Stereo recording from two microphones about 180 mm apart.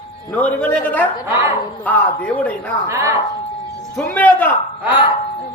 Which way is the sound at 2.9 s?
15° right (ahead or behind).